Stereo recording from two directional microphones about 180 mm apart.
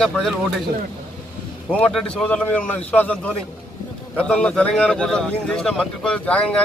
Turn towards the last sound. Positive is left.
turn(degrees=5)  # may be behind; listen again after turning